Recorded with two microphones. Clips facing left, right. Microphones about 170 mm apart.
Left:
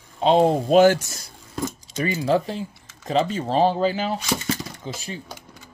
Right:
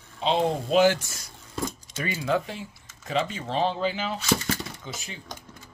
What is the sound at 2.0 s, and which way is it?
Speech, 30° left (ahead or behind).